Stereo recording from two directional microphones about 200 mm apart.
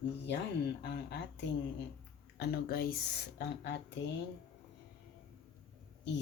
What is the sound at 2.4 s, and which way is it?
Speech, 50° left (ahead or behind).